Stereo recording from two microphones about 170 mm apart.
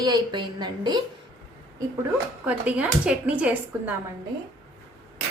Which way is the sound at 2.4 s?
10° right (ahead or behind).